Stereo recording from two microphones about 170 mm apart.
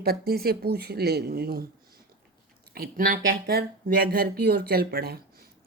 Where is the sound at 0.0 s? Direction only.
65° right (ahead or behind).